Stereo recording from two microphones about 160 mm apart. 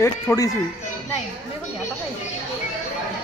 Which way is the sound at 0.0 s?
20° left (ahead or behind).